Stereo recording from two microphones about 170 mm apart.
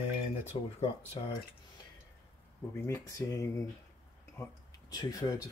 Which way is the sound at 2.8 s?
20° left (ahead or behind).